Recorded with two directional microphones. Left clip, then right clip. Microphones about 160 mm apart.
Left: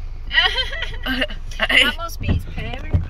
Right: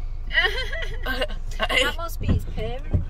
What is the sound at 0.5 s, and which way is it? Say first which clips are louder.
Speech: left 6 dB; 75° right (ahead or behind).